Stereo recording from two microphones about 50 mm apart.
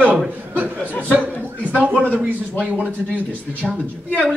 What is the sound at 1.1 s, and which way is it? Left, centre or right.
Chuckle, right.